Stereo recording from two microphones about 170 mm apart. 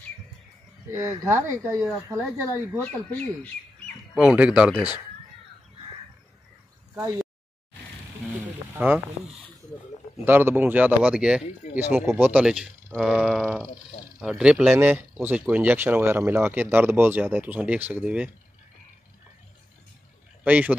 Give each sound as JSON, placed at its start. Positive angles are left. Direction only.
{"t": 0.8, "sound": "speech", "side_deg": -15}
{"t": 2.8, "sound": "speech", "side_deg": 10}
{"t": 4.1, "sound": "speech", "side_deg": -5}
{"t": 8.5, "sound": "a sound", "side_deg": -10}
{"t": 10.2, "sound": "speech", "side_deg": -10}
{"t": 20.4, "sound": "speech", "side_deg": -10}